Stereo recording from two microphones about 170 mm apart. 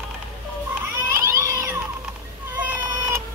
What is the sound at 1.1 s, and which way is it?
Cat, 15° right (ahead or behind).